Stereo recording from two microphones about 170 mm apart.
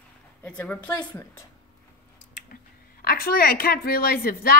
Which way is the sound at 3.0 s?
60° left (ahead or behind).